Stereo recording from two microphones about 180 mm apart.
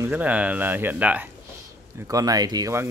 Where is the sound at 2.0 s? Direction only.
20° right (ahead or behind).